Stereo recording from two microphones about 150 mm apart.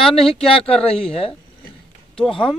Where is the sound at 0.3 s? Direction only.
40° left (ahead or behind).